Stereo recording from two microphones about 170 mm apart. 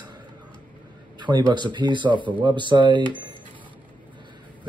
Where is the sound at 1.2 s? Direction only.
25° right (ahead or behind).